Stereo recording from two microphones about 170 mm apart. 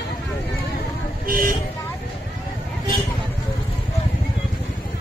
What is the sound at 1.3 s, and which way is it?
Vehicle, 55° right (ahead or behind).